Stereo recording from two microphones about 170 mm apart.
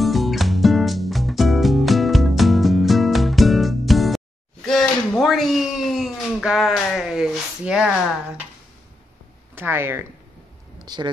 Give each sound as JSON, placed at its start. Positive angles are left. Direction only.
{"t": 0.0, "sound": "music", "side_deg": 0}
{"t": 9.6, "sound": "speech", "side_deg": -10}
{"t": 10.9, "sound": "speech", "side_deg": -25}